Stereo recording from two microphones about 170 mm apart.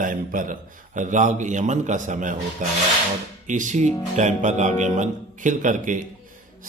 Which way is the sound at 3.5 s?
45° right (ahead or behind).